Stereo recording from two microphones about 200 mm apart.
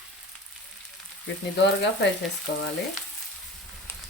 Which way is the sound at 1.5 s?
60° left (ahead or behind).